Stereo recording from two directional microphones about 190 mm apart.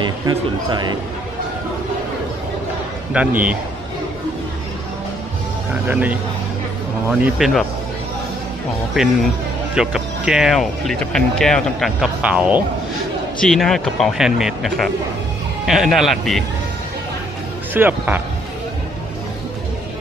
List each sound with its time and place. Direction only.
0.0 s a man's voice: 25° right (ahead or behind)
3.1 s a man's voice: 5° right (ahead or behind)
5.9 s a man's voice: 10° right (ahead or behind)
9.0 s speech: centre (ahead or behind)
17.7 s a man's voice: 10° right (ahead or behind)